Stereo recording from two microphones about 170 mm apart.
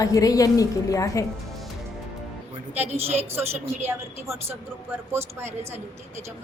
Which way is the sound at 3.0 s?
35° right (ahead or behind).